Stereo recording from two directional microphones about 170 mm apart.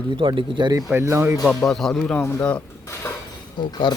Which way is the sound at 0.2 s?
30° right (ahead or behind).